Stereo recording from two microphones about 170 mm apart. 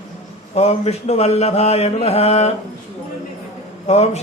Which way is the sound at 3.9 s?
40° left (ahead or behind).